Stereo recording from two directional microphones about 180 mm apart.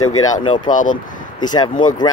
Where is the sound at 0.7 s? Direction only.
45° left (ahead or behind).